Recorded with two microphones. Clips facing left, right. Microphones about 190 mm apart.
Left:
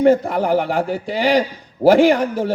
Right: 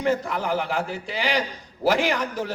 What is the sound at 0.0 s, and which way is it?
A man's voice, 35° left (ahead or behind).